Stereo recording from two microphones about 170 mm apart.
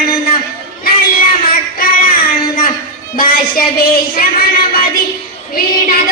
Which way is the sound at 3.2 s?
60° left (ahead or behind).